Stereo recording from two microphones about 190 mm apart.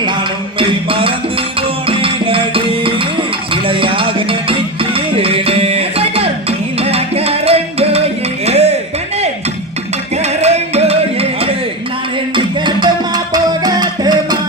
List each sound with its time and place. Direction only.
0.6 s music: 30° right (ahead or behind)
10.4 s music: 35° right (ahead or behind)
12.6 s music: 20° right (ahead or behind)